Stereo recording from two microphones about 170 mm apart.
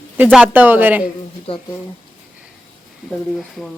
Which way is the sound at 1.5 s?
35° left (ahead or behind).